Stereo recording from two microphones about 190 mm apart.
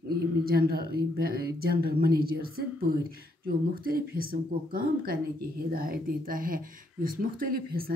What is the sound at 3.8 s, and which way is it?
Speech, 50° right (ahead or behind).